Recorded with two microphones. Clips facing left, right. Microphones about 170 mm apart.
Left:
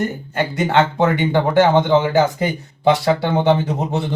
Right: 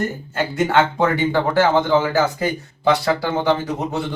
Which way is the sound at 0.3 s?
20° left (ahead or behind).